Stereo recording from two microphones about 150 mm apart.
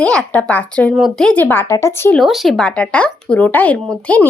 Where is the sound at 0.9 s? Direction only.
Centre (ahead or behind); by 2.2 s 15° left (ahead or behind).